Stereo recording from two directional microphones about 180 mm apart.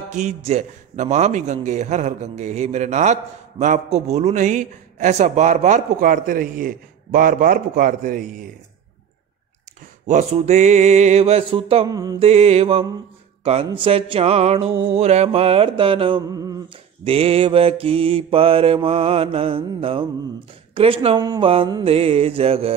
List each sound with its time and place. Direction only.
0.1 s a man's voice: 40° right (ahead or behind)
10.0 s a man's voice: 40° right (ahead or behind)
13.4 s a sound: 35° right (ahead or behind)
13.7 s a man's voice: 30° right (ahead or behind)
17.0 s a man's voice: 35° right (ahead or behind)
21.3 s a sound: 30° right (ahead or behind)
21.9 s a man's voice: 35° right (ahead or behind)